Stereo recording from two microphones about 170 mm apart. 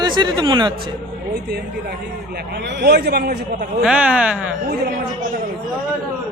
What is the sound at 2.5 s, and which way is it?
A man's voice, 85° right.